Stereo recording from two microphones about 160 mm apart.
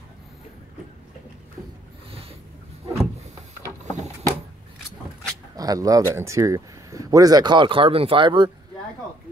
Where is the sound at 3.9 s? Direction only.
45° right (ahead or behind).